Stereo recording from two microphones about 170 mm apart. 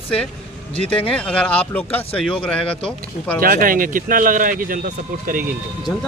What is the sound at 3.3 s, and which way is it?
Speech, 60° right (ahead or behind).